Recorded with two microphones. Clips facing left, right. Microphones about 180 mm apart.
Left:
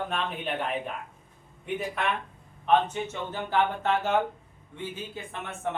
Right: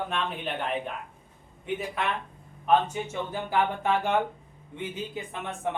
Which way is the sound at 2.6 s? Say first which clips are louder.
Even; 10° right (ahead or behind).